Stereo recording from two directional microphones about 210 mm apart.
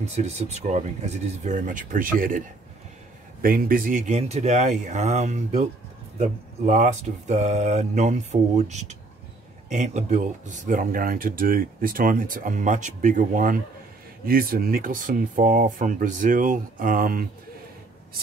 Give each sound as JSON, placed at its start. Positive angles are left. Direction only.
{"t": 0.0, "sound": "speech", "side_deg": -30}
{"t": 3.4, "sound": "speech", "side_deg": -45}